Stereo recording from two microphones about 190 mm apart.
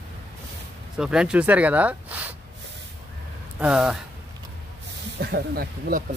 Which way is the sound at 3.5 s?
5° right (ahead or behind).